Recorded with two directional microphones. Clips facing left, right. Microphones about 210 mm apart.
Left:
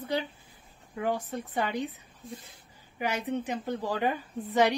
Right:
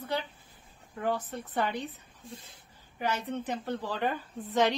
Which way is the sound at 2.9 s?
10° left (ahead or behind).